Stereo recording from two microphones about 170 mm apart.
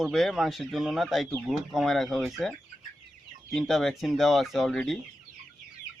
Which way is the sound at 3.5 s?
Centre (ahead or behind).